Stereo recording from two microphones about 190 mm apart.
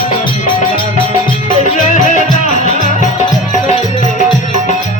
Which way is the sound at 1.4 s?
40° left (ahead or behind).